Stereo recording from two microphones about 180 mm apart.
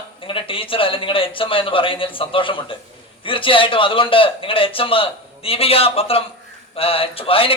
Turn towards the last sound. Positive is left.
turn(degrees=30)  # may be behind; listen again after turning